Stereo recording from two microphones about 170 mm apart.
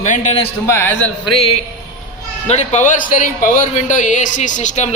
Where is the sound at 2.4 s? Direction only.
40° left (ahead or behind).